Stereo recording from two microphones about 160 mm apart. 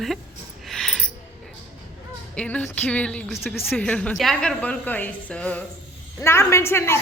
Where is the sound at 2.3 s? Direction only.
10° left (ahead or behind).